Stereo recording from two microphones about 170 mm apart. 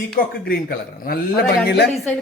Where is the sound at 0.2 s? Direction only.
60° left (ahead or behind).